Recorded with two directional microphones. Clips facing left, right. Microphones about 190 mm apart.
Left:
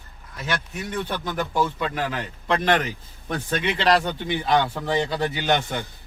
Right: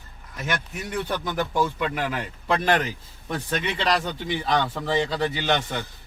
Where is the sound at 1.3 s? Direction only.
15° right (ahead or behind); by 4.9 s 5° left (ahead or behind).